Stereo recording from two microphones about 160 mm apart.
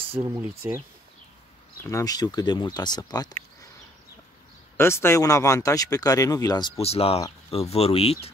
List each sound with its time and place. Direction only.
0.2 s speech: 15° right (ahead or behind)
1.8 s speech: 20° left (ahead or behind)
4.7 s speech: 15° left (ahead or behind)
6.8 s speech: 40° left (ahead or behind)